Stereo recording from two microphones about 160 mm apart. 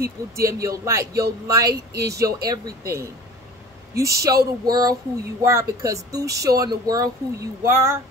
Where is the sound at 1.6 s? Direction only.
85° right.